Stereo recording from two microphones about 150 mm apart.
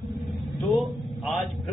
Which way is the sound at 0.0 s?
Centre (ahead or behind).